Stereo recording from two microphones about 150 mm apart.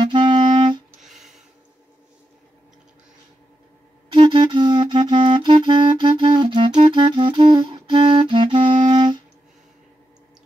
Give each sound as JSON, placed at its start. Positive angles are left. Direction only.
{"t": 0.0, "sound": "clarinet", "side_deg": -30}
{"t": 1.0, "sound": "a sound", "side_deg": 0}
{"t": 4.1, "sound": "clarinet", "side_deg": -30}